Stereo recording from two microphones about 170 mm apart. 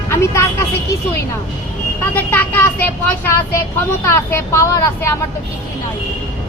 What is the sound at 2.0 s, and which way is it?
Speech, 10° left (ahead or behind).